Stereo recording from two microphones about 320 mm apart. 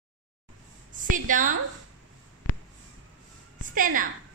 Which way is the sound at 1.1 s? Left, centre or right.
Right.